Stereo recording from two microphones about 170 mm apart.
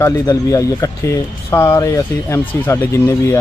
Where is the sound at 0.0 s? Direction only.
20° left (ahead or behind).